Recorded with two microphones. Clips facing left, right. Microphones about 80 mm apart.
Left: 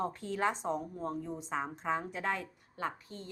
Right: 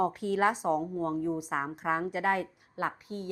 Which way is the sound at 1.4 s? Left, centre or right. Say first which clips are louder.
Right 4 dB; right.